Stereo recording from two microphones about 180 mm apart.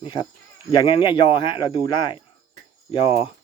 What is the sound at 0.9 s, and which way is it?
Speech, 25° left (ahead or behind).